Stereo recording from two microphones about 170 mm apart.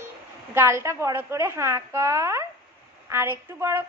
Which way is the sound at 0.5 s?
15° right (ahead or behind).